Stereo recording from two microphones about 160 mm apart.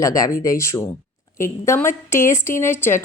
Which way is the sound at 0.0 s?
20° left (ahead or behind).